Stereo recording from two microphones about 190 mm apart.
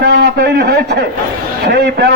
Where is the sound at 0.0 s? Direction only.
60° right (ahead or behind).